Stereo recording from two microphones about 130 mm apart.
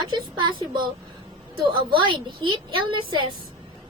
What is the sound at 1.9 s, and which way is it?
A woman's voice, 40° right (ahead or behind).